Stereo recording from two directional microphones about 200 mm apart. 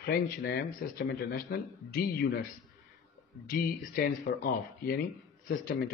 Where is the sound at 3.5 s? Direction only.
45° left (ahead or behind).